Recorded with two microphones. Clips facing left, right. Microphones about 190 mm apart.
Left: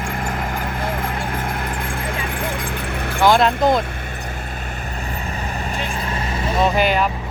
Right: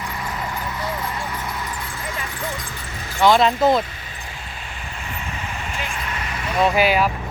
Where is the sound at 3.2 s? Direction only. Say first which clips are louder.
Even; centre (ahead or behind).